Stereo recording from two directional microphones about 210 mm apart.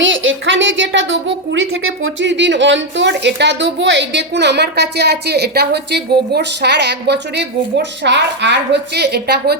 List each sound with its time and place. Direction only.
0.0 s a woman's voice: 65° right (ahead or behind)
2.2 s a woman's voice: 55° right (ahead or behind)